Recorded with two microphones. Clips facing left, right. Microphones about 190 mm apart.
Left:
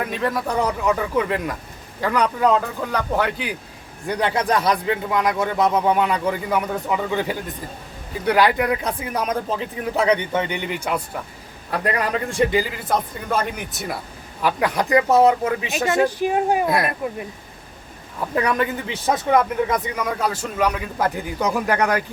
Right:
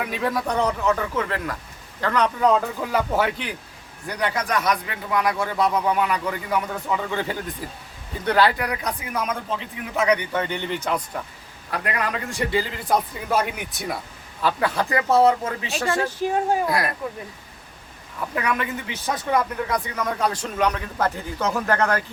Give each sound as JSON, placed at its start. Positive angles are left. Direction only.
{"t": 0.0, "sound": "a man's voice", "side_deg": 0}
{"t": 4.0, "sound": "a man's voice", "side_deg": 25}
{"t": 11.7, "sound": "a man's voice", "side_deg": 35}
{"t": 12.8, "sound": "a man's voice", "side_deg": 0}
{"t": 14.4, "sound": "speech", "side_deg": 15}
{"t": 18.3, "sound": "a man's voice", "side_deg": 35}
{"t": 19.3, "sound": "a man's voice", "side_deg": 20}
{"t": 20.1, "sound": "speech", "side_deg": 5}